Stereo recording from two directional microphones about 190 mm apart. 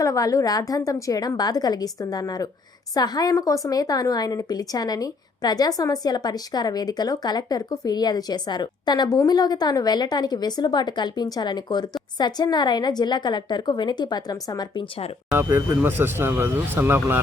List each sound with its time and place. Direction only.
0.0 s a woman's voice: 15° left (ahead or behind)
15.3 s speech: 15° right (ahead or behind)